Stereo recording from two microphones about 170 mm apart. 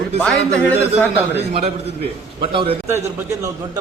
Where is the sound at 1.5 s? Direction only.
35° right (ahead or behind).